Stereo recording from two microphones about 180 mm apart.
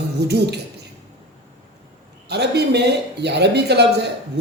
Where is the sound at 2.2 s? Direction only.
65° right (ahead or behind).